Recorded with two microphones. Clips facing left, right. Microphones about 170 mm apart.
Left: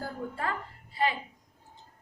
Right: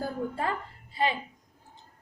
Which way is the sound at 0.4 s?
20° right (ahead or behind).